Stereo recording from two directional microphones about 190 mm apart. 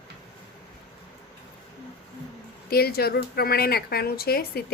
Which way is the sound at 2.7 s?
55° left (ahead or behind).